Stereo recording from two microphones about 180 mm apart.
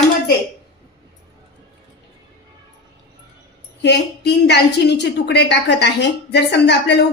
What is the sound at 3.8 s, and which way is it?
A woman's voice, 70° left (ahead or behind).